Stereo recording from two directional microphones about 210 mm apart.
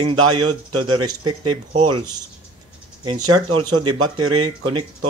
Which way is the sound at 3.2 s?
90° right.